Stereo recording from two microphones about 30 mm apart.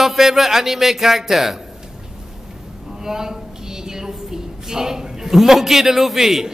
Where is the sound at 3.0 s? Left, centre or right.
Centre.